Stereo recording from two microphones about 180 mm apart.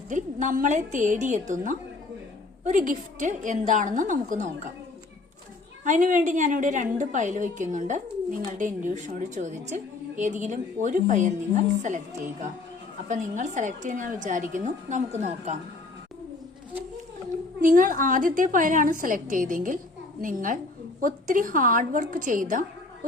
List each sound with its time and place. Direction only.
0.1 s a woman's voice: 45° right (ahead or behind)
5.8 s a woman's voice: 45° right (ahead or behind)
13.1 s a woman's voice: 40° right (ahead or behind)
17.6 s a woman's voice: 45° right (ahead or behind)